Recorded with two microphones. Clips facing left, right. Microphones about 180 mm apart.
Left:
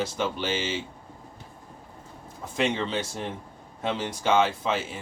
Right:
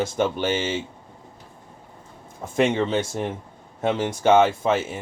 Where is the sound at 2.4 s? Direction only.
50° right (ahead or behind).